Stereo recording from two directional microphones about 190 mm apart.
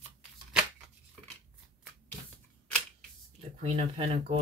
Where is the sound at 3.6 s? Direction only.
30° right (ahead or behind).